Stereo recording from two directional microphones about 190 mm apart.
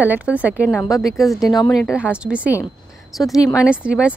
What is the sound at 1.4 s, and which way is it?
Speech, 20° left (ahead or behind).